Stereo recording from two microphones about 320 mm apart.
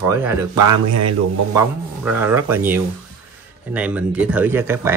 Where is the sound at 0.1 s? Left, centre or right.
Centre.